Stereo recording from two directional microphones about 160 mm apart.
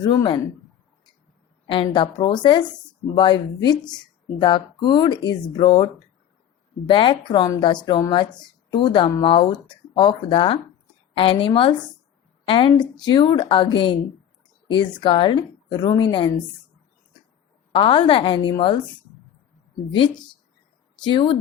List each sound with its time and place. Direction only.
0.0 s a woman's voice: 25° left (ahead or behind)
1.6 s a woman's voice: 30° left (ahead or behind)
17.7 s a woman's voice: 35° left (ahead or behind)
21.0 s a woman's voice: 30° left (ahead or behind)